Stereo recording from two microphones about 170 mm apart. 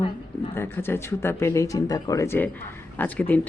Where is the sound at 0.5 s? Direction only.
15° left (ahead or behind).